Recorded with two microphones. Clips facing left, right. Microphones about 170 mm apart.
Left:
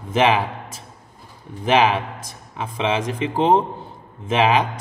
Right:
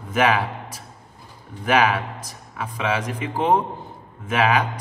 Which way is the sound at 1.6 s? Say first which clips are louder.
Left 2 dB; 25° left (ahead or behind).